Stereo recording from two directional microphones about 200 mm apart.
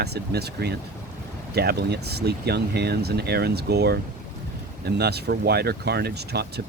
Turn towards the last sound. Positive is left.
turn(degrees=-55)  # may be behind; listen again after turning